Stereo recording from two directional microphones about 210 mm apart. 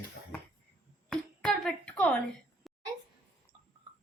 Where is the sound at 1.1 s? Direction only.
5° left (ahead or behind).